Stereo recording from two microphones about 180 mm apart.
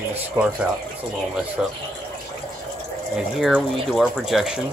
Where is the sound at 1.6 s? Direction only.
5° right (ahead or behind).